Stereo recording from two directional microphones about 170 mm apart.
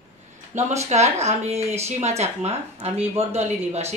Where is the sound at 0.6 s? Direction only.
40° right (ahead or behind).